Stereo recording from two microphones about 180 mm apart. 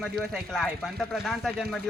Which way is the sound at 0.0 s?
Centre (ahead or behind).